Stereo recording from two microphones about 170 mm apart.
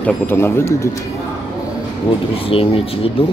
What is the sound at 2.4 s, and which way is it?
Speech, 35° left (ahead or behind).